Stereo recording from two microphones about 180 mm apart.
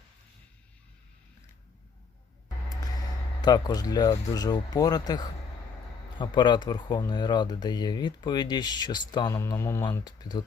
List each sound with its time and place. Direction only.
3.4 s speech: 20° left (ahead or behind)